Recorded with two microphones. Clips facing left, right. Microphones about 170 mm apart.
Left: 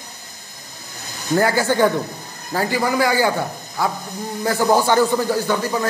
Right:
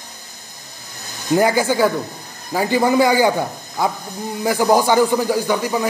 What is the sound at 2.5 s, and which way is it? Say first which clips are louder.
Speech: right 4 dB; 25° right (ahead or behind).